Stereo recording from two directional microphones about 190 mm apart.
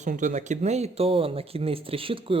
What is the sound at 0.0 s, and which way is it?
Speech, 40° right (ahead or behind).